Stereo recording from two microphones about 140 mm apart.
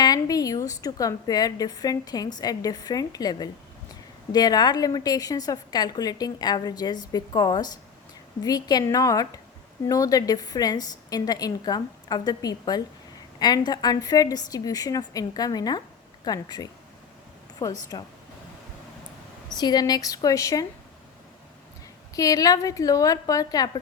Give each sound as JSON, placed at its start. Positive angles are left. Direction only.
{"t": 0.0, "sound": "a woman's voice", "side_deg": 25}
{"t": 19.5, "sound": "a woman's voice", "side_deg": 30}
{"t": 22.1, "sound": "a woman's voice", "side_deg": 25}